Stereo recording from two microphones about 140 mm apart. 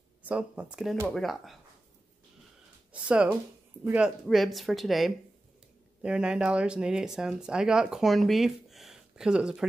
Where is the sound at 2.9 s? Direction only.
10° right (ahead or behind).